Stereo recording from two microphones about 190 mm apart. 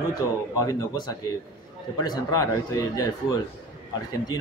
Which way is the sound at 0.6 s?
20° left (ahead or behind).